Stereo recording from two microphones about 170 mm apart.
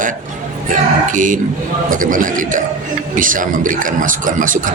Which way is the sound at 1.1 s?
50° right (ahead or behind).